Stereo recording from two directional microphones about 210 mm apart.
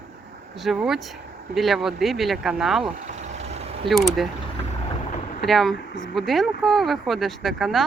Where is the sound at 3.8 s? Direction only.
Centre (ahead or behind).